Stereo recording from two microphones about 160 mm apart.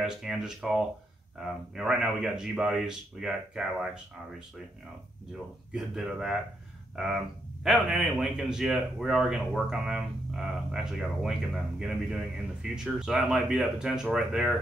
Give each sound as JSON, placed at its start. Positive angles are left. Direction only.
{"t": 0.0, "sound": "a man's voice", "side_deg": 0}
{"t": 5.7, "sound": "a man's voice", "side_deg": -5}
{"t": 7.6, "sound": "a man's voice", "side_deg": 0}